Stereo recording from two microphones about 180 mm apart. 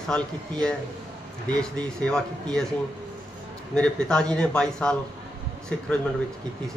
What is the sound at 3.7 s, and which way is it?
A man's voice, 5° left (ahead or behind).